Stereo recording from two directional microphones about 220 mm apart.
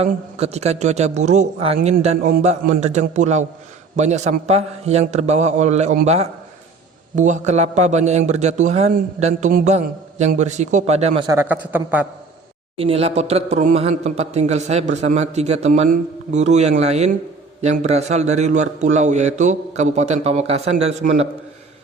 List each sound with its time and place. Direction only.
0.0 s a man's voice: 30° right (ahead or behind); by 12.0 s 5° right (ahead or behind)
12.7 s a man's voice: 25° right (ahead or behind)